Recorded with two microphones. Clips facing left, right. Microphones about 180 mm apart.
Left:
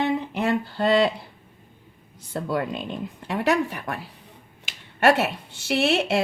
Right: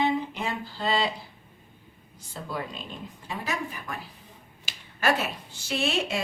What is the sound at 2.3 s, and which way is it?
A woman's voice, 60° left (ahead or behind).